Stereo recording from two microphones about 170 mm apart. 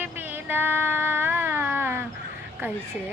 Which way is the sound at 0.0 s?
10° right (ahead or behind).